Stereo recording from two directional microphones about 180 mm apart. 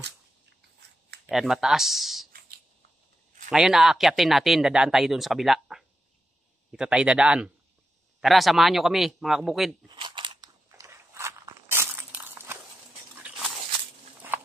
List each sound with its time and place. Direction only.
1.3 s speech: centre (ahead or behind)
3.4 s speech: 5° right (ahead or behind)
9.8 s biting: 25° right (ahead or behind)
13.2 s a sound: 5° right (ahead or behind)